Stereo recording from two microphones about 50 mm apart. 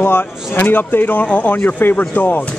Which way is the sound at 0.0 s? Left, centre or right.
Left.